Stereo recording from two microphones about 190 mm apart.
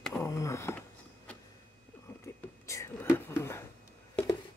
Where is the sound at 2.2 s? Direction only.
15° left (ahead or behind).